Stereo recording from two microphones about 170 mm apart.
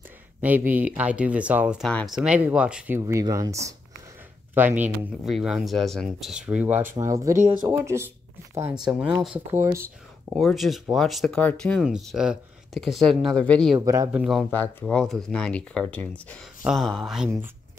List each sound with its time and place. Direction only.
0.4 s speech: 10° right (ahead or behind)
3.0 s speech: 20° right (ahead or behind)
8.7 s speech: 5° right (ahead or behind)
10.3 s speech: centre (ahead or behind)
13.7 s speech: 20° right (ahead or behind)
14.1 s speech: centre (ahead or behind)
14.5 s speech: 10° left (ahead or behind)